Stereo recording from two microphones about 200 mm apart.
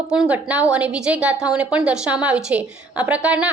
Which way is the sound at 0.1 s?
5° right (ahead or behind).